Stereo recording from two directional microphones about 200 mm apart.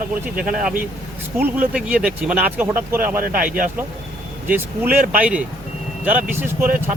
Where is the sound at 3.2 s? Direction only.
45° right (ahead or behind).